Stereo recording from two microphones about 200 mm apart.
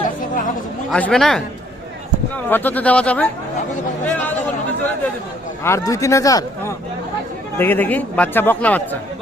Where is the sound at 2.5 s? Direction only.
10° left (ahead or behind).